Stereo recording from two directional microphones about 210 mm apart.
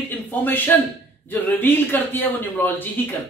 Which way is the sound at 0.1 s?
10° left (ahead or behind).